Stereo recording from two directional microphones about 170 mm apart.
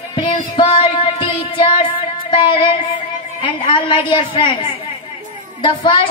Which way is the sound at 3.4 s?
30° left (ahead or behind).